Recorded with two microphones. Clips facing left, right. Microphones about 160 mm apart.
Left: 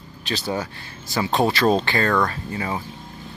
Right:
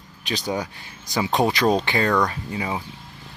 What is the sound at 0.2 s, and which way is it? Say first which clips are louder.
Speech: even; 15° right (ahead or behind).